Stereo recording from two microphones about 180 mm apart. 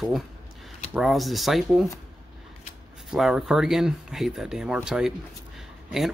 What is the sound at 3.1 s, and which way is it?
Speech, 5° right (ahead or behind).